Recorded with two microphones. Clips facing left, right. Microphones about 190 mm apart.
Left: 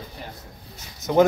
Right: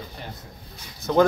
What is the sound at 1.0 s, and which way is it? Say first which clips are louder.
Speech: left 1 dB; 20° left (ahead or behind).